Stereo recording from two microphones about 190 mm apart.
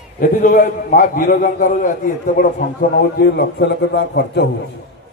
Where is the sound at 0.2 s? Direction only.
50° left (ahead or behind).